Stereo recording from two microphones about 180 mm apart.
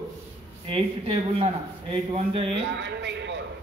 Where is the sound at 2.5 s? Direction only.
80° right.